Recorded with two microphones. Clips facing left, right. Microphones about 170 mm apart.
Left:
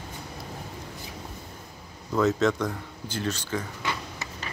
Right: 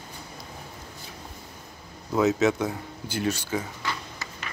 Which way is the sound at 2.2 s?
5° right (ahead or behind).